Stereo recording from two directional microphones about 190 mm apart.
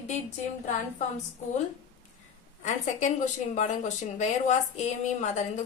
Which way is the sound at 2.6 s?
40° left (ahead or behind).